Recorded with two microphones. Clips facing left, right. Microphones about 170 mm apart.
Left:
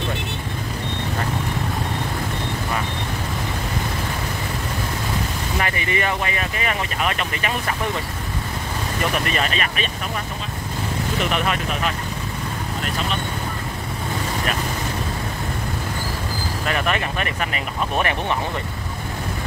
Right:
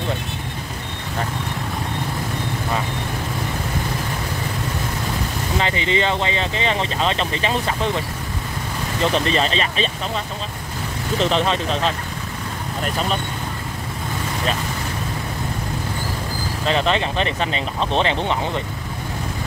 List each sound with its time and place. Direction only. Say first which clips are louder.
5.6 s speech: right 3 dB; 20° right (ahead or behind)
9.0 s speech: right 4 dB; 25° right (ahead or behind)
11.1 s speech: right 5 dB; 30° right (ahead or behind)
16.6 s speech: right 4 dB; 25° right (ahead or behind)